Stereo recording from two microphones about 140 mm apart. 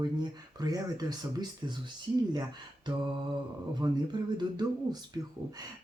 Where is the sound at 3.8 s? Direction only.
30° right (ahead or behind).